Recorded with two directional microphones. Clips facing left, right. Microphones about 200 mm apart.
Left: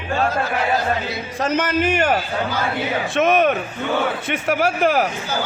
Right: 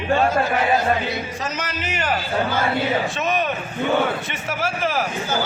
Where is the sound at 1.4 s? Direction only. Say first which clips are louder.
Left 9 dB; 55° left (ahead or behind).